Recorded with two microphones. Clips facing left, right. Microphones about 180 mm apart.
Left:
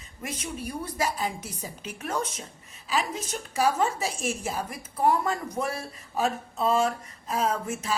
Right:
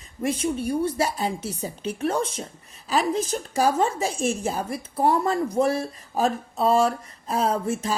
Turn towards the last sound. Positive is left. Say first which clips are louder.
# right 4 dB
turn(degrees=-35)  # may be behind; listen again after turning